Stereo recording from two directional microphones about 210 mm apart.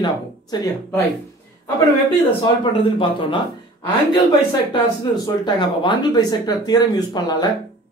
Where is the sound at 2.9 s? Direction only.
25° left (ahead or behind).